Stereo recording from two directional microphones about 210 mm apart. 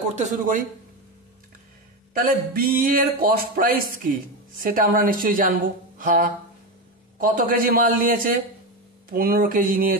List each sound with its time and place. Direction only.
0.1 s a woman's voice: 35° right (ahead or behind)
2.1 s a woman's voice: 45° right (ahead or behind)